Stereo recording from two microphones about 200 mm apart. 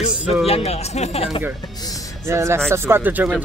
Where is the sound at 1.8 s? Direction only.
15° left (ahead or behind).